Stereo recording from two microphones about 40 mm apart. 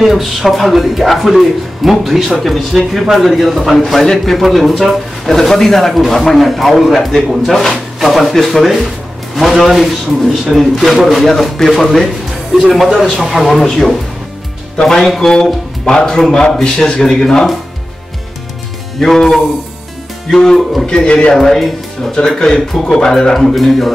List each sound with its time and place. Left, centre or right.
0.0 s a man's voice: centre
18.9 s a man's voice: centre
20.8 s a man's voice: centre
21.4 s a man's voice: centre